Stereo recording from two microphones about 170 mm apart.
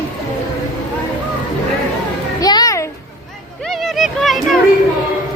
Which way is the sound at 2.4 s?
25° left (ahead or behind).